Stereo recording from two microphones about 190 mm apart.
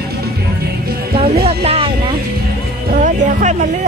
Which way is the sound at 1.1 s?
30° right (ahead or behind).